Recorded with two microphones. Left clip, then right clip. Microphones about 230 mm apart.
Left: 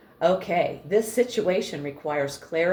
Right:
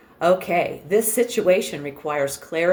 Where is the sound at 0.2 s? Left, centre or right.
Right.